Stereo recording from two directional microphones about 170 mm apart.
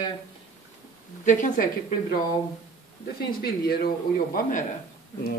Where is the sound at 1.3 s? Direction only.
45° left (ahead or behind).